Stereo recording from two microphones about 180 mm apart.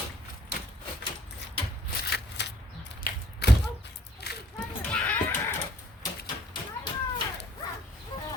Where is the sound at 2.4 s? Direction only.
75° left (ahead or behind).